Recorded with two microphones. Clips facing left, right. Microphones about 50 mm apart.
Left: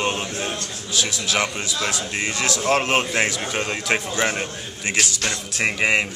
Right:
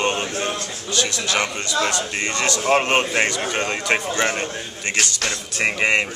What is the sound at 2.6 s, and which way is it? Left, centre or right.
A man's voice, centre.